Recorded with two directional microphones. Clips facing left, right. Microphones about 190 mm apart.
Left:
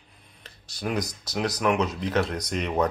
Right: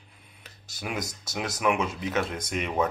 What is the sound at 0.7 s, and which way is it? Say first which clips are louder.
Speech: left 5 dB; 5° right (ahead or behind).